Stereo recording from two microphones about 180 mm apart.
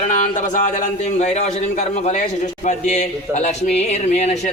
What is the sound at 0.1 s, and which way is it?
Speech, 45° left (ahead or behind).